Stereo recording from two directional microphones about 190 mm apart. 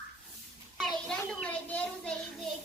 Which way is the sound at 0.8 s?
Centre (ahead or behind).